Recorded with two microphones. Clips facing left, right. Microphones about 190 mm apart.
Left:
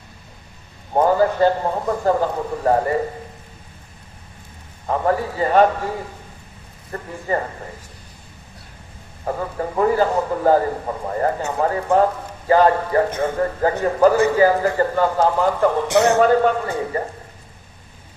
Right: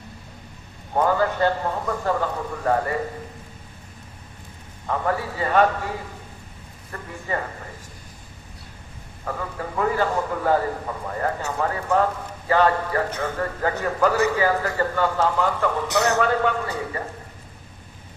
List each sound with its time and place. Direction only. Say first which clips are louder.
0.9 s a man's voice: left 5 dB; 35° left (ahead or behind)
4.9 s a man's voice: left 5 dB; 35° left (ahead or behind)
6.9 s a man's voice: left 6 dB; 35° left (ahead or behind)
9.2 s a man's voice: left 6 dB; 30° left (ahead or behind)